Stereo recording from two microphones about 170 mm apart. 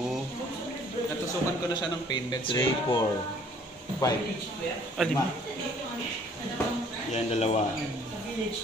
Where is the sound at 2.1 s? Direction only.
25° left (ahead or behind).